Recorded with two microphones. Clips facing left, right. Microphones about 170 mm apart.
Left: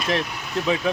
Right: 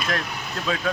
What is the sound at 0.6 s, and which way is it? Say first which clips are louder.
Speech: left 4 dB; 20° left (ahead or behind).